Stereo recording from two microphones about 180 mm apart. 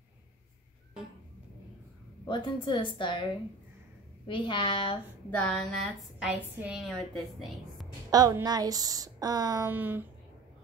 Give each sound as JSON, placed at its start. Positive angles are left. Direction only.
{"t": 2.2, "sound": "a woman's voice", "side_deg": 25}
{"t": 4.3, "sound": "a woman's voice", "side_deg": 25}
{"t": 5.3, "sound": "a woman's voice", "side_deg": 5}
{"t": 8.1, "sound": "a woman's voice", "side_deg": -20}
{"t": 9.7, "sound": "a sound", "side_deg": -10}